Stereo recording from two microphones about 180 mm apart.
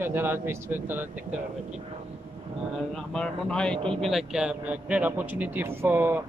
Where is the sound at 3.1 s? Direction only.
5° left (ahead or behind).